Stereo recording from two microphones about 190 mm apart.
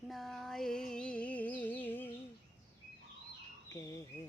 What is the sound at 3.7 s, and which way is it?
Speech, 15° left (ahead or behind).